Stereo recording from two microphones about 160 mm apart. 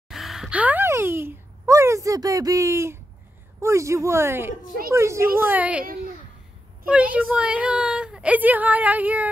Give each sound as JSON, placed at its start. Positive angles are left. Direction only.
{"t": 0.1, "sound": "speech", "side_deg": 0}
{"t": 6.9, "sound": "speech", "side_deg": -10}